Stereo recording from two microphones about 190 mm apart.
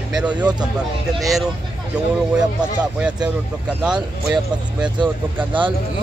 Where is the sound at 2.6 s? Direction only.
5° right (ahead or behind).